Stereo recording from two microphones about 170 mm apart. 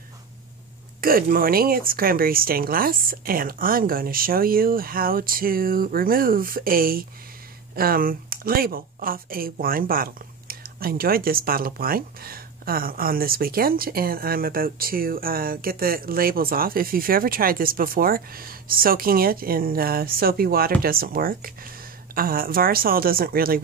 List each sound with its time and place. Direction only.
1.0 s speech: 60° right (ahead or behind)